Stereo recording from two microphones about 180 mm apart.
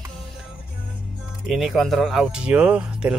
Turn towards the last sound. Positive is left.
turn(degrees=-5)  # may be behind; listen again after turning